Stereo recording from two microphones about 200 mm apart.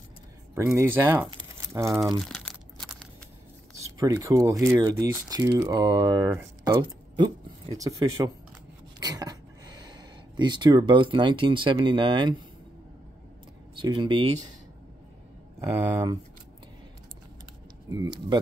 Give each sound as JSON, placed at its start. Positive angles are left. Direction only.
{"t": 0.7, "sound": "speech", "side_deg": -10}
{"t": 2.2, "sound": "crumpling", "side_deg": 0}
{"t": 3.8, "sound": "speech", "side_deg": -15}
{"t": 13.7, "sound": "speech", "side_deg": -25}
{"t": 17.9, "sound": "speech", "side_deg": -20}